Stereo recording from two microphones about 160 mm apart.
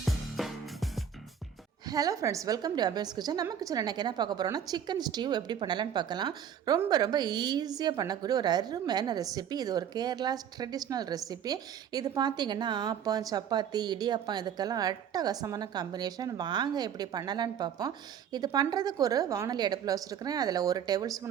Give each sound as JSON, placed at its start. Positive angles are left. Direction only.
{"t": 0.0, "sound": "music", "side_deg": 0}
{"t": 1.9, "sound": "a woman's voice", "side_deg": -20}